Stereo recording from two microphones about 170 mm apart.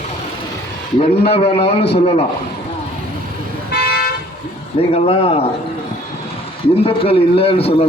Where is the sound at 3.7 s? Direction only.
65° left (ahead or behind).